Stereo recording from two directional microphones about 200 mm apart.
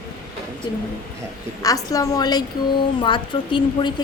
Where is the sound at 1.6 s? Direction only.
15° left (ahead or behind).